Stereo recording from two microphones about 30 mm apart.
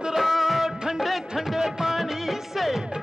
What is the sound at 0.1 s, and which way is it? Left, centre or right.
Music, centre.